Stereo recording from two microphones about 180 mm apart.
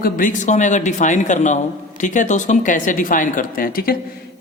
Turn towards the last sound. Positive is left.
turn(degrees=55)  # may be behind; listen again after turning